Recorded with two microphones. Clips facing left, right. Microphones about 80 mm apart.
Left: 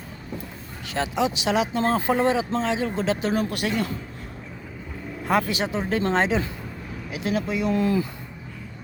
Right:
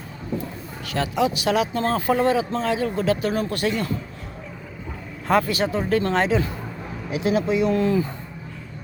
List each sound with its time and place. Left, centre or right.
0.9 s speech: left
3.5 s speech: centre
5.2 s speech: centre
7.1 s speech: centre